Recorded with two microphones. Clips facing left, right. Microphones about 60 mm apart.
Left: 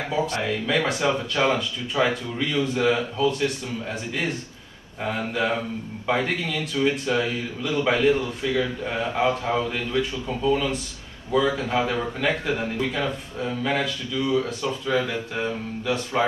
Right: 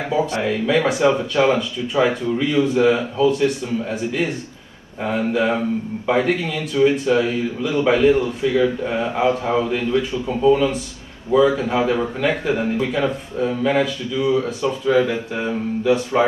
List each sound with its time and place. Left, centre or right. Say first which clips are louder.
0.1 s speech: right 5 dB; centre
2.3 s speech: right 7 dB; centre